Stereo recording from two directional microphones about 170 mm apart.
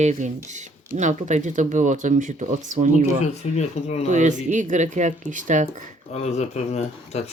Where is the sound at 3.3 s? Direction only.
40° left (ahead or behind).